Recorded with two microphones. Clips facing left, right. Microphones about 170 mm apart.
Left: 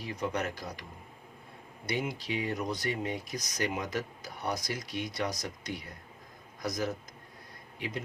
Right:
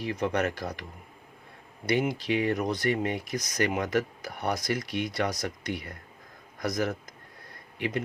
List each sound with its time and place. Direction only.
0.0 s speech: 70° right (ahead or behind)
1.9 s speech: 65° right (ahead or behind)